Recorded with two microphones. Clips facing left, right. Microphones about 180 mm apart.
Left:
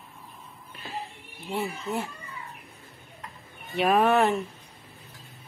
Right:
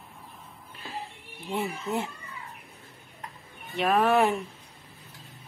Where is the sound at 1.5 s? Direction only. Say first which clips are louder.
Even; 20° right (ahead or behind).